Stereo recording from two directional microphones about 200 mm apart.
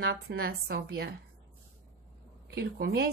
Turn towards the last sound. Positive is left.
turn(degrees=-55)  # may be behind; listen again after turning